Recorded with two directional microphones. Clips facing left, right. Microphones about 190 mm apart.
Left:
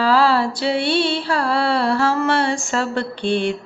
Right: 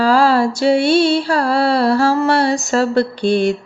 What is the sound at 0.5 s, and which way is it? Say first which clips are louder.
Music: right 6 dB; 45° right (ahead or behind).